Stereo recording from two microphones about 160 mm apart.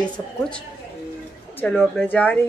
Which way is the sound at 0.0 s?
5° left (ahead or behind).